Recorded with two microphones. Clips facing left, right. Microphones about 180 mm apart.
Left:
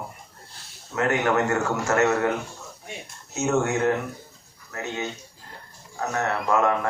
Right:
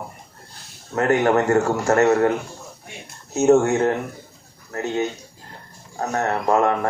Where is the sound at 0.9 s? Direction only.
35° right (ahead or behind).